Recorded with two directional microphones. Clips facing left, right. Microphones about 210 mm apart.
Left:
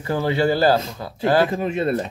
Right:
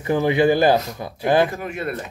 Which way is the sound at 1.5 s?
25° left (ahead or behind).